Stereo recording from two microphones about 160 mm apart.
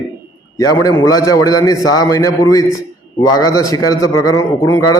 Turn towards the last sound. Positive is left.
turn(degrees=25)  # may be behind; listen again after turning